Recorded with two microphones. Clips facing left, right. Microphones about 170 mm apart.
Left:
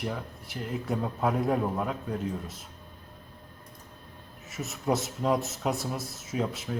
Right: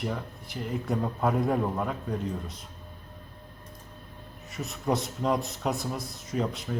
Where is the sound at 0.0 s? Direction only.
Centre (ahead or behind).